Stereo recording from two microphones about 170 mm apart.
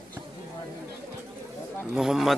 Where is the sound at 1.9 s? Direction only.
Centre (ahead or behind).